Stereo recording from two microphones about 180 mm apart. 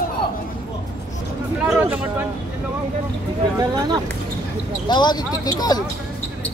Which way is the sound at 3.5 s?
20° right (ahead or behind).